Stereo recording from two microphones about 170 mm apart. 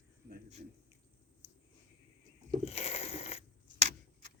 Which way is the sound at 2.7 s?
35° left (ahead or behind).